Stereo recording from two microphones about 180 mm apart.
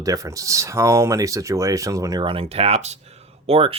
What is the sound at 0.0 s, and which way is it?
Speech, 20° right (ahead or behind).